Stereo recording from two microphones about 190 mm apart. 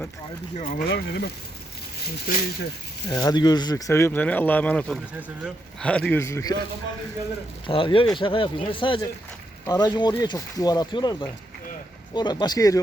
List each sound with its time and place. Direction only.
0.5 s speech: 45° left (ahead or behind)
3.1 s speech: 20° left (ahead or behind)
7.7 s speech: 25° left (ahead or behind)